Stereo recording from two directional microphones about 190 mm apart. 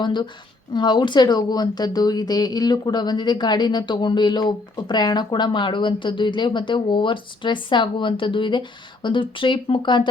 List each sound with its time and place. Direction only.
0.0 s speech: 25° left (ahead or behind)